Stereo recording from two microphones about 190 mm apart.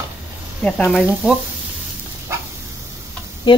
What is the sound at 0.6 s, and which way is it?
Speech, 5° left (ahead or behind).